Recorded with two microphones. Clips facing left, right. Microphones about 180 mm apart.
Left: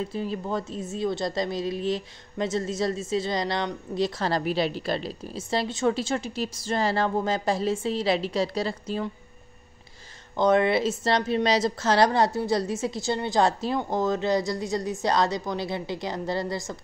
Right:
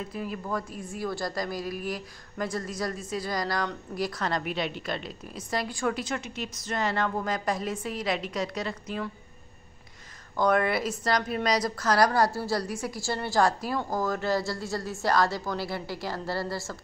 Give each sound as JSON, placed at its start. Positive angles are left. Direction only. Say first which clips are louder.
{"t": 0.1, "sound": "a woman's voice", "louder": "left 3 dB", "side_deg": 30}
{"t": 10.3, "sound": "a woman's voice", "louder": "left 4 dB", "side_deg": 25}